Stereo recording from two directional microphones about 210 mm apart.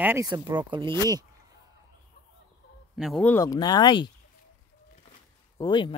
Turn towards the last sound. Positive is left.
turn(degrees=20)  # may be behind; listen again after turning